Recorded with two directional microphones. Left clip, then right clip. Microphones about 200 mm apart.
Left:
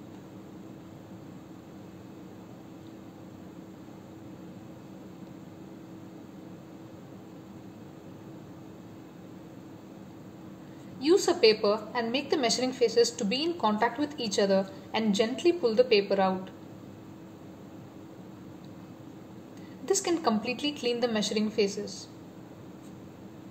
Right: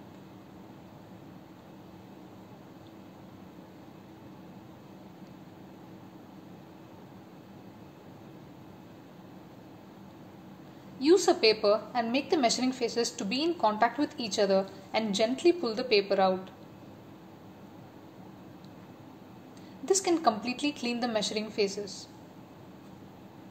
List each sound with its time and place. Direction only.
11.0 s a woman's voice: 15° right (ahead or behind)
19.9 s a woman's voice: 20° right (ahead or behind)